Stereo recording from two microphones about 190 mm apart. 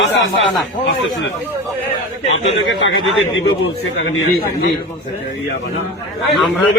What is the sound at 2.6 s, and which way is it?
Speech, 85° left.